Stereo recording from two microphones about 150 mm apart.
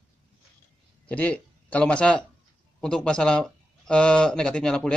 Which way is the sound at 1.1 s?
10° left (ahead or behind).